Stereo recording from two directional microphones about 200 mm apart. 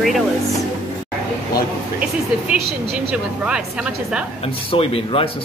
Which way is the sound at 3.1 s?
5° right (ahead or behind).